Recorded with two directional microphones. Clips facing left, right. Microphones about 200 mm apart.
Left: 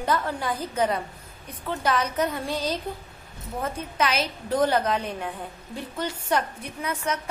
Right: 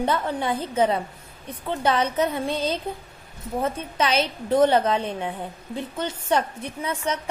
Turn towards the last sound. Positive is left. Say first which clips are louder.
# right 2 dB
turn(degrees=-25)  # may be behind; listen again after turning